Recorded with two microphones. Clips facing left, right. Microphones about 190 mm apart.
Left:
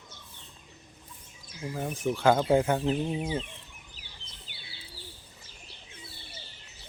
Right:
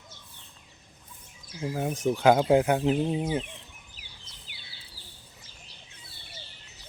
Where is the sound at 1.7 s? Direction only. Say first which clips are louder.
Right 3 dB; 15° right (ahead or behind).